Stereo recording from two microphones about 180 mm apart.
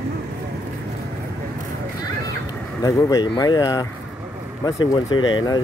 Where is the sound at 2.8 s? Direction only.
20° left (ahead or behind).